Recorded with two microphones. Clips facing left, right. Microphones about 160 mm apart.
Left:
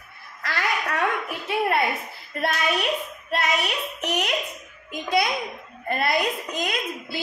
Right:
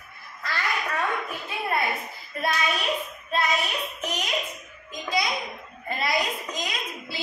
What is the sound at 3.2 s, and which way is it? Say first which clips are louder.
Child singing: left 1 dB; 70° left (ahead or behind).